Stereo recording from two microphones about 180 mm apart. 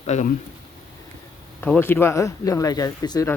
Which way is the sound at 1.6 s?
10° left (ahead or behind).